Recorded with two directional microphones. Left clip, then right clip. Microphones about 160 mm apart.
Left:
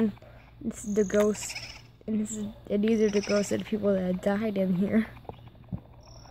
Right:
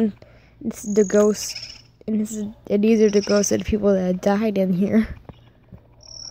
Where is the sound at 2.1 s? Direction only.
30° right (ahead or behind).